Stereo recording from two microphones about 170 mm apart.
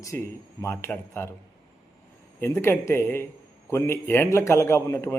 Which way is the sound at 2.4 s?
15° left (ahead or behind).